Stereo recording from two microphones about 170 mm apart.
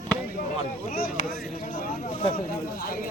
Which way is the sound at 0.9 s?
55° left (ahead or behind).